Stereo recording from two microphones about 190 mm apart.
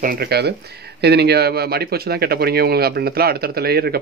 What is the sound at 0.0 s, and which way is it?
Speech, 50° right (ahead or behind).